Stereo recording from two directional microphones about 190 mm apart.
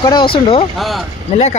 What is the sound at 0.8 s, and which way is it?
Speech, centre (ahead or behind).